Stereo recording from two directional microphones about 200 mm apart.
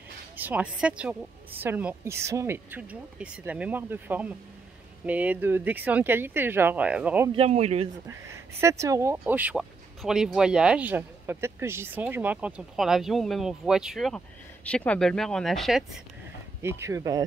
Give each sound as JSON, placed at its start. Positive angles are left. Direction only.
{"t": 0.4, "sound": "a woman's voice", "side_deg": -10}
{"t": 7.3, "sound": "speech", "side_deg": -30}
{"t": 8.5, "sound": "speech", "side_deg": -15}
{"t": 16.6, "sound": "a woman's voice", "side_deg": -15}